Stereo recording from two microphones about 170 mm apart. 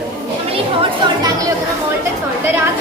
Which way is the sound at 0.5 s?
30° right (ahead or behind).